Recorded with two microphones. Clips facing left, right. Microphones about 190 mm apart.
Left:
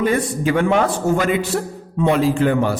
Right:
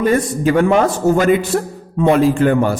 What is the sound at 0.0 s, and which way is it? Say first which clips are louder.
A man's voice: right 3 dB; 45° right (ahead or behind).